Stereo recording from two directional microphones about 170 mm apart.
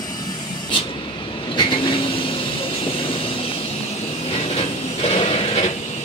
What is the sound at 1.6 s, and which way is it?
Vehicle, 30° left (ahead or behind).